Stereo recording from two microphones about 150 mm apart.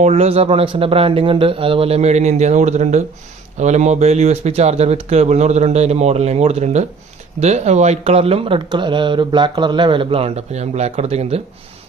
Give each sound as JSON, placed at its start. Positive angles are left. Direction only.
{"t": 0.0, "sound": "speech", "side_deg": -45}